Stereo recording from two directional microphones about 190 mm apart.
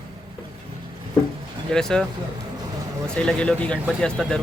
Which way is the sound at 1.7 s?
5° left (ahead or behind).